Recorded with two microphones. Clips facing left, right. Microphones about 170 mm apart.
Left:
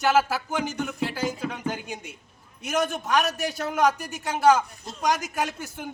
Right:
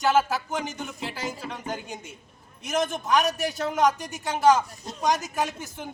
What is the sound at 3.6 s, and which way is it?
Speech, 5° left (ahead or behind).